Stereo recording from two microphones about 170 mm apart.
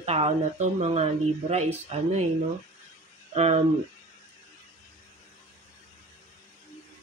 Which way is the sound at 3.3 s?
40° right (ahead or behind).